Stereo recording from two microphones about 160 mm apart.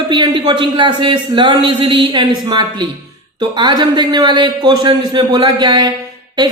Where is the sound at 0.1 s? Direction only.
30° right (ahead or behind).